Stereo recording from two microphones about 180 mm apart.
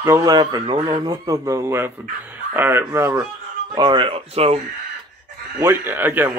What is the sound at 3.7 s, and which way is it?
Speech, 25° right (ahead or behind).